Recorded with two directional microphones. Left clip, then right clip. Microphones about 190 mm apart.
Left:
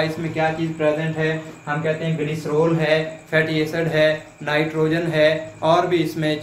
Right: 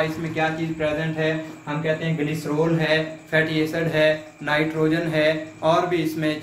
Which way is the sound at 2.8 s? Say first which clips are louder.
Left 2 dB; 10° left (ahead or behind).